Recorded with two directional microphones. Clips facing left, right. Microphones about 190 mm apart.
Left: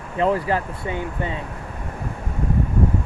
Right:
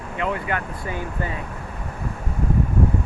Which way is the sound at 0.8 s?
20° left (ahead or behind).